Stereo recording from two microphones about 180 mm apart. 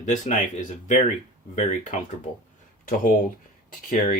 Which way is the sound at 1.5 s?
45° left (ahead or behind).